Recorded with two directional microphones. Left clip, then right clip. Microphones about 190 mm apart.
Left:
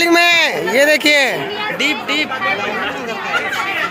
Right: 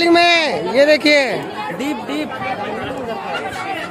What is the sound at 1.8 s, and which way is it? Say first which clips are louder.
Speech: left 8 dB; 45° right (ahead or behind).